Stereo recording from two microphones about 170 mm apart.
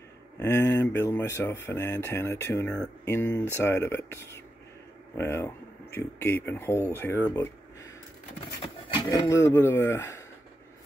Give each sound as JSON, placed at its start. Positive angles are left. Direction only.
{"t": 0.4, "sound": "speech", "side_deg": 15}
{"t": 8.8, "sound": "a sound", "side_deg": 30}
{"t": 9.3, "sound": "speech", "side_deg": 15}